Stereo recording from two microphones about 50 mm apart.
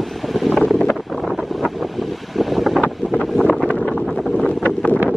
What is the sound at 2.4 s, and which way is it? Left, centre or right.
Wind noise, centre.